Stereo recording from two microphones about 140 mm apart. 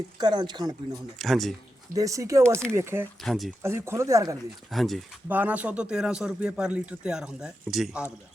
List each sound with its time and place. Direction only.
0.2 s speech: 30° right (ahead or behind)
1.2 s speech: centre (ahead or behind)
2.0 s speech: 25° right (ahead or behind)
3.2 s speech: centre (ahead or behind)
3.6 s speech: 20° right (ahead or behind)
4.7 s speech: centre (ahead or behind)
5.3 s speech: 10° right (ahead or behind)